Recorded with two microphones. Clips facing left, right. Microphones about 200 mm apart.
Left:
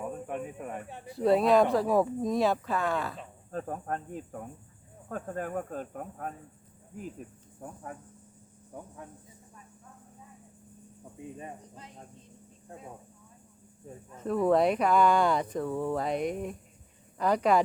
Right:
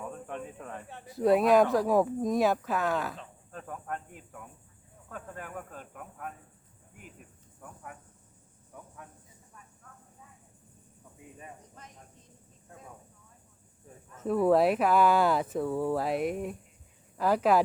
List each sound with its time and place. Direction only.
0.0 s speech: 10° left (ahead or behind)
1.2 s speech: centre (ahead or behind)
3.5 s speech: 35° left (ahead or behind)
7.6 s speech: 35° left (ahead or behind)
11.2 s speech: 25° left (ahead or behind)
14.2 s speech: 10° right (ahead or behind)